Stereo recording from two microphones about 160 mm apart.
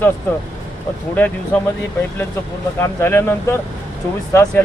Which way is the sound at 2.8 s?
15° left (ahead or behind).